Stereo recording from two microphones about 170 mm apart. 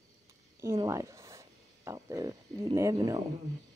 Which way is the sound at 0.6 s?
15° right (ahead or behind).